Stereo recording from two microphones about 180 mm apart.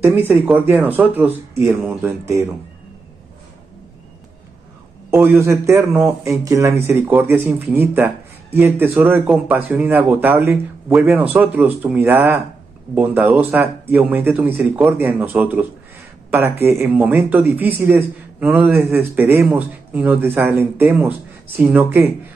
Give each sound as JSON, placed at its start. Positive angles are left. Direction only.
{"t": 0.3, "sound": "speech", "side_deg": -5}
{"t": 5.1, "sound": "speech", "side_deg": -10}